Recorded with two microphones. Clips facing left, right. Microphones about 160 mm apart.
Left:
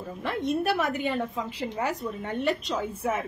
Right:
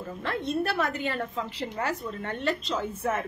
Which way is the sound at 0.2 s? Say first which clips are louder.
Left 2 dB; 15° left (ahead or behind).